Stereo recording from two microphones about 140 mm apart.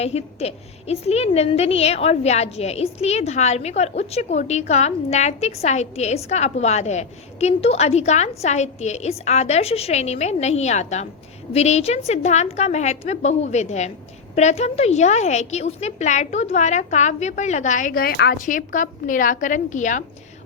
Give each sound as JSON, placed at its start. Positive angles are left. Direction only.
{"t": 0.0, "sound": "a woman's voice", "side_deg": 50}